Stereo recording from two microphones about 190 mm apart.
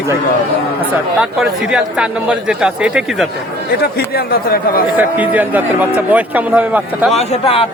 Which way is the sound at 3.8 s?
55° left (ahead or behind).